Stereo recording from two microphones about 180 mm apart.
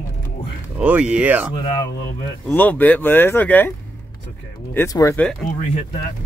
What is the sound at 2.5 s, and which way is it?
Speech, 10° left (ahead or behind).